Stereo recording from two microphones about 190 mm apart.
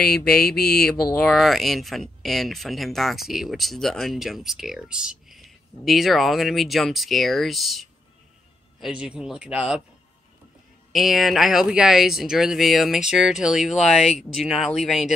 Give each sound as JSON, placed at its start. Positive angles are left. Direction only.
{"t": 0.3, "sound": "mantra", "side_deg": 55}
{"t": 1.1, "sound": "speech", "side_deg": 0}
{"t": 10.9, "sound": "speech", "side_deg": 0}